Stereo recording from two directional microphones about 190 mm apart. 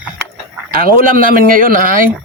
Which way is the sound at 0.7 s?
50° right (ahead or behind).